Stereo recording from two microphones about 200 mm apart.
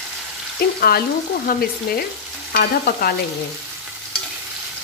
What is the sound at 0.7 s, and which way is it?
A woman's voice, 50° left (ahead or behind).